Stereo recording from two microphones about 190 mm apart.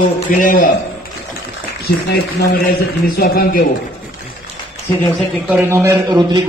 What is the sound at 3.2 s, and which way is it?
Speech, 50° left (ahead or behind).